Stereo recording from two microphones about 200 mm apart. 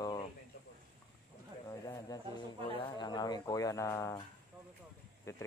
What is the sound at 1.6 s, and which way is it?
Speech, 15° left (ahead or behind).